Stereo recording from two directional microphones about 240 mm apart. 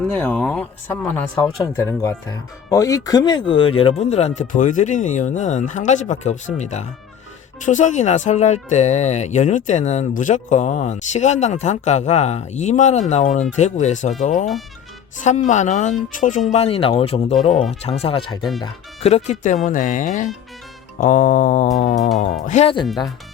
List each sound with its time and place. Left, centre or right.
0.1 s speech: centre